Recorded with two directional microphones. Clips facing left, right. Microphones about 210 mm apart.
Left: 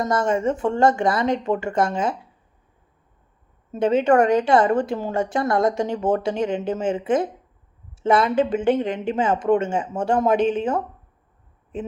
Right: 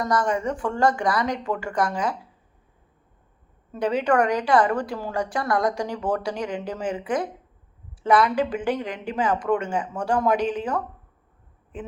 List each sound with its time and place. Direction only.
0.0 s a woman's voice: 25° left (ahead or behind)
3.7 s a woman's voice: 25° left (ahead or behind)